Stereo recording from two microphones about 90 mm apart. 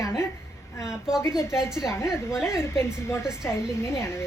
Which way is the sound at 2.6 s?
30° left (ahead or behind).